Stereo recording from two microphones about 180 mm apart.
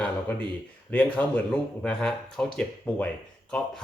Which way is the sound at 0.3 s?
10° left (ahead or behind).